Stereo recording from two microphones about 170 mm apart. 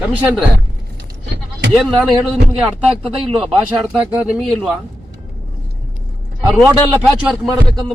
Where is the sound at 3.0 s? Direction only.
35° right (ahead or behind).